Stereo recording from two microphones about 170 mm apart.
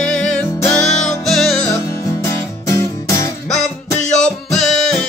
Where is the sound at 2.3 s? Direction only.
15° left (ahead or behind).